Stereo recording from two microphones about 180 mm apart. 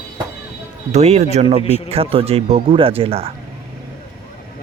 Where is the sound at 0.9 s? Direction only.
35° right (ahead or behind).